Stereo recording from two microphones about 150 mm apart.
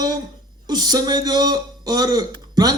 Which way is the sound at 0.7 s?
25° right (ahead or behind).